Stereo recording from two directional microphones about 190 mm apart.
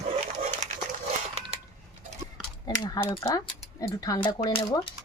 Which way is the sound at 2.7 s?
20° left (ahead or behind).